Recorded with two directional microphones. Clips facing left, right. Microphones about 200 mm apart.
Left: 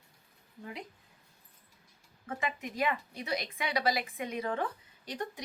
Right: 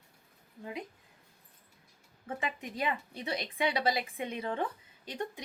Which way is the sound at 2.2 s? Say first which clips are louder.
Left 1 dB; 30° right (ahead or behind).